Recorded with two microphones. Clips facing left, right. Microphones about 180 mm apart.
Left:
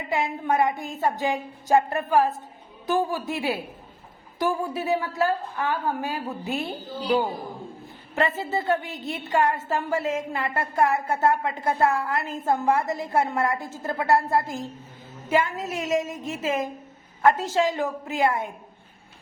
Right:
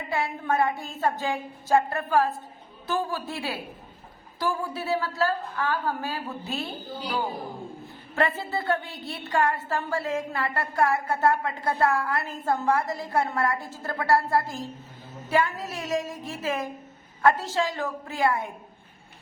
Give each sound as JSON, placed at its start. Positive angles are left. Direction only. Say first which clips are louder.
{"t": 0.1, "sound": "a woman's voice", "louder": "left 2 dB", "side_deg": 20}
{"t": 8.4, "sound": "a woman's voice", "louder": "left 3 dB", "side_deg": 20}